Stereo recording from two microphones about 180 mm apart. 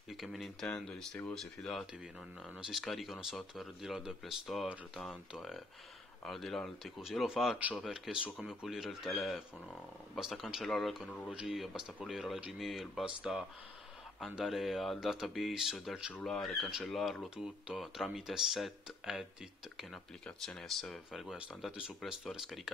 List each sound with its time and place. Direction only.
0.1 s speech: centre (ahead or behind)